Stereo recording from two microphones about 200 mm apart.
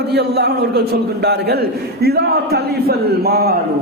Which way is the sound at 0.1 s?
55° right (ahead or behind).